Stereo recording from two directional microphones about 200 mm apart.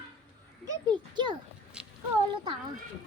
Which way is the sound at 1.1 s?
25° right (ahead or behind).